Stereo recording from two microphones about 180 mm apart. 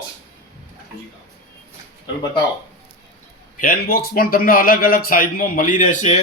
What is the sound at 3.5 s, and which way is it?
A man's voice, 50° left (ahead or behind).